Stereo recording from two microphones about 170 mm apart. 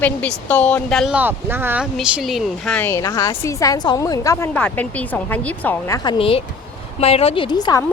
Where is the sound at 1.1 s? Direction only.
10° right (ahead or behind); by 4.4 s 20° left (ahead or behind).